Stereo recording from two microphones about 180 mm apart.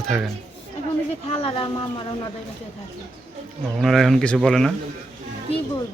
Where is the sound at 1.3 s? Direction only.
30° left (ahead or behind).